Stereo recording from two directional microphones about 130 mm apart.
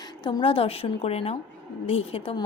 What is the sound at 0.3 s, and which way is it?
A woman's voice, 40° left (ahead or behind).